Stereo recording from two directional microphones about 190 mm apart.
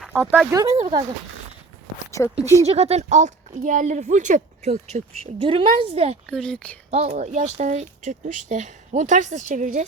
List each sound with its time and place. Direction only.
0.0 s speech: 5° right (ahead or behind)
0.5 s speech: 15° right (ahead or behind)
0.8 s speech: 35° right (ahead or behind)
2.4 s speech: 15° left (ahead or behind)
2.6 s speech: 35° right (ahead or behind)
6.2 s speech: 5° left (ahead or behind)
6.9 s speech: 35° right (ahead or behind)